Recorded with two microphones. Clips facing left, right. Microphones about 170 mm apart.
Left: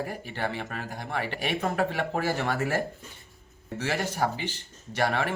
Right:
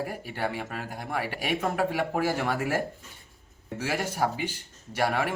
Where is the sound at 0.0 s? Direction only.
10° right (ahead or behind).